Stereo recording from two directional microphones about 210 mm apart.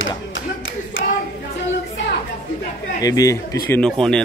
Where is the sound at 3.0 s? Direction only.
15° left (ahead or behind).